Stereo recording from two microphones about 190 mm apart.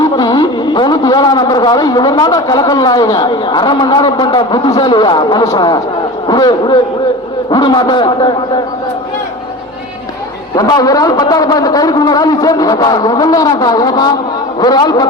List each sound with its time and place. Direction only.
0.0 s a man's voice: 20° left (ahead or behind)
10.5 s a man's voice: 20° left (ahead or behind)